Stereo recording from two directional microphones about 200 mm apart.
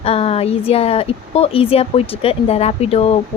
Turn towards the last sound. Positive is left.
turn(degrees=30)  # may be behind; listen again after turning